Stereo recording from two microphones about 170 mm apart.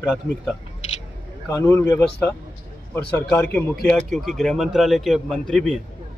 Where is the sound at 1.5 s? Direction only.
20° left (ahead or behind).